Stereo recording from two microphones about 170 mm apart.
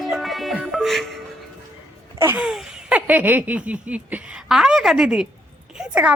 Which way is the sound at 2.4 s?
5° right (ahead or behind).